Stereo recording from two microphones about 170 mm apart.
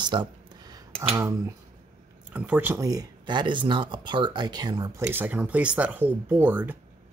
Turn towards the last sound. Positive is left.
turn(degrees=-10)  # may be behind; listen again after turning